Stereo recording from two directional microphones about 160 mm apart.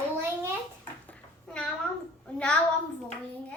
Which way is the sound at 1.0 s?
5° left (ahead or behind).